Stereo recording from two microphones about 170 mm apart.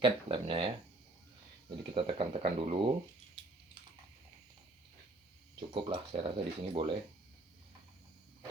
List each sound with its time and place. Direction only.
0.0 s speech: 30° right (ahead or behind)
2.0 s speech: 30° right (ahead or behind)
5.5 s speech: 30° right (ahead or behind)